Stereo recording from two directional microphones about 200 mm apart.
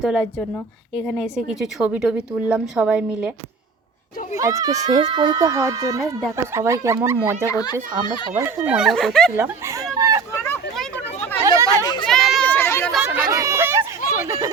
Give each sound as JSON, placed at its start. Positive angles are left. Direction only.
{"t": 0.0, "sound": "a woman's voice", "side_deg": 0}
{"t": 4.4, "sound": "speech", "side_deg": -15}
{"t": 7.5, "sound": "speech", "side_deg": 20}
{"t": 8.4, "sound": "a woman's voice", "side_deg": -10}
{"t": 9.3, "sound": "speech", "side_deg": -15}
{"t": 10.5, "sound": "chatter", "side_deg": 10}
{"t": 12.0, "sound": "children playing", "side_deg": 5}
{"t": 12.9, "sound": "chatter", "side_deg": -5}
{"t": 13.3, "sound": "a sound", "side_deg": -15}